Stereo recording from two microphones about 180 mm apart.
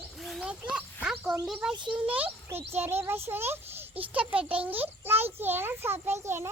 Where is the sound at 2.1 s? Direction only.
10° right (ahead or behind).